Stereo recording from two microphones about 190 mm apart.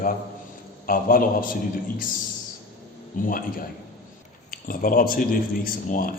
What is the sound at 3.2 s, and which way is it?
A man's voice, 45° left (ahead or behind).